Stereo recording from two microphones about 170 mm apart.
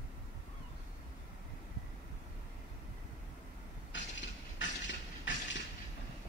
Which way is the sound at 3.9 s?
90° left.